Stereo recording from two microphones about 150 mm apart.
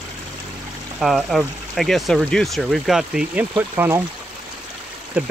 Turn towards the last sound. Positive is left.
turn(degrees=-10)  # may be behind; listen again after turning